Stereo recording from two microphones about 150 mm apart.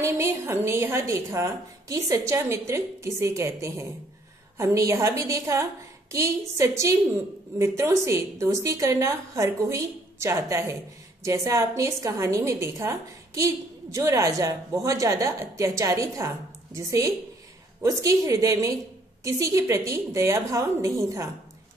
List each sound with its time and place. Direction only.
0.0 s a woman's voice: 20° right (ahead or behind)